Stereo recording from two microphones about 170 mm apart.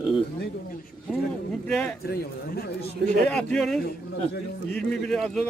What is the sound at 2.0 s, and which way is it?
Speech, 65° left (ahead or behind).